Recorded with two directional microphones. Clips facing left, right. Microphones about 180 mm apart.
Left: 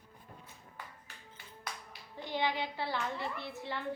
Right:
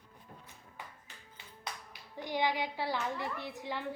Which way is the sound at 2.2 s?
15° right (ahead or behind).